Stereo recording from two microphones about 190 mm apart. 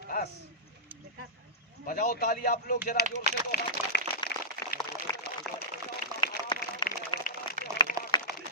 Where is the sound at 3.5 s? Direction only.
55° left (ahead or behind).